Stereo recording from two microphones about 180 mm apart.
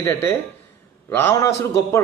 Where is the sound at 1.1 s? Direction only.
15° left (ahead or behind).